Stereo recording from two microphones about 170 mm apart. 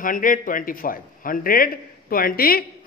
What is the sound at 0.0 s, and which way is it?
Speech, 55° left (ahead or behind).